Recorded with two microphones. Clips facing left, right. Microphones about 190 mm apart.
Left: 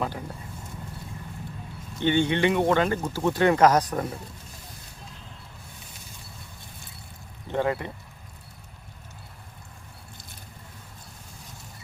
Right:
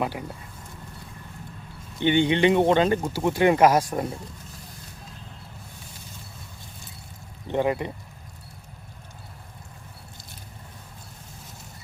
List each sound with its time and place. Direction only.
0.0 s speech: 10° right (ahead or behind)
2.0 s speech: 15° right (ahead or behind)
7.4 s speech: 20° right (ahead or behind)